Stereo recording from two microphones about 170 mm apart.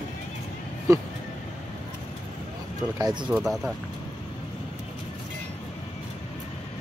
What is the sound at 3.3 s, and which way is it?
Speech, 5° right (ahead or behind).